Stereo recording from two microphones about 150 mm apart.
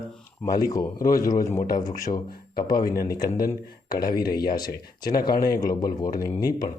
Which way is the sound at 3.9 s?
85° left.